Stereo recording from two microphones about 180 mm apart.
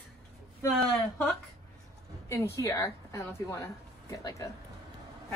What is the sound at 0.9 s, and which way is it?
A woman's voice, 5° left (ahead or behind).